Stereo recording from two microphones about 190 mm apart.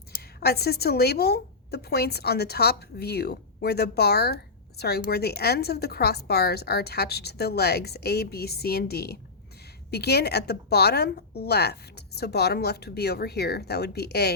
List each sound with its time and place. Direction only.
0.1 s a woman's voice: 55° left (ahead or behind)